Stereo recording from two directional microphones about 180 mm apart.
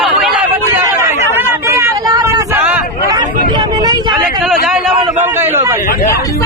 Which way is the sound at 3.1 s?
25° right (ahead or behind).